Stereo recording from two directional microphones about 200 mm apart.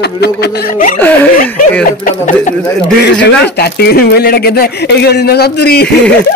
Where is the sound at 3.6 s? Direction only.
50° left (ahead or behind).